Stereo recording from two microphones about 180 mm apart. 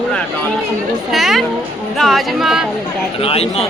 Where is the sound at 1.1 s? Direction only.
Centre (ahead or behind).